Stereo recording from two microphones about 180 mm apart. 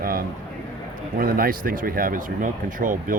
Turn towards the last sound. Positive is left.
turn(degrees=-50)  # may be behind; listen again after turning